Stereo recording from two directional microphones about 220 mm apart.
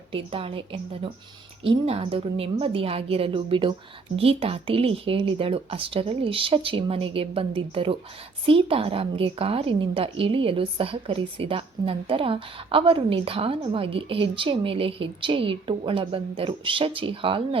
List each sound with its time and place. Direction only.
0.1 s a woman's voice: 25° right (ahead or behind)